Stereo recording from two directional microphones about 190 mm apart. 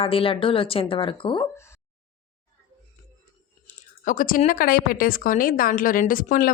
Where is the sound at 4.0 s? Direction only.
45° left (ahead or behind).